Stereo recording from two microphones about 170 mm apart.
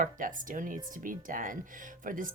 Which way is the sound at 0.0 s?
50° right (ahead or behind).